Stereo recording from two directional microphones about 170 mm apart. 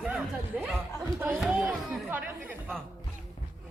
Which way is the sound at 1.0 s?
20° right (ahead or behind).